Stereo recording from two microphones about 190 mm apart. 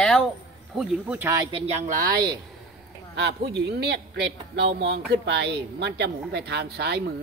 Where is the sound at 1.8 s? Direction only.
50° right (ahead or behind).